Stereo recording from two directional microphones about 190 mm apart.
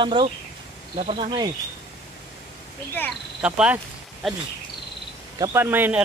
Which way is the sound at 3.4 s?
5° right (ahead or behind).